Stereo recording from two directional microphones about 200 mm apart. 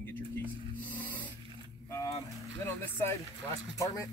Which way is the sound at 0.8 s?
10° left (ahead or behind).